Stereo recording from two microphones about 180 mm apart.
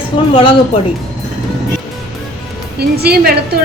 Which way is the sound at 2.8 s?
60° right (ahead or behind).